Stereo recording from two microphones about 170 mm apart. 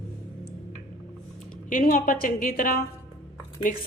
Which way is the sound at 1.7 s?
50° left (ahead or behind).